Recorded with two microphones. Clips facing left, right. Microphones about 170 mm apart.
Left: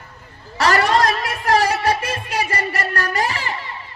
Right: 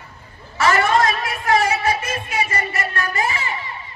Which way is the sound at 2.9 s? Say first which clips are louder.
Left 1 dB; 35° left (ahead or behind).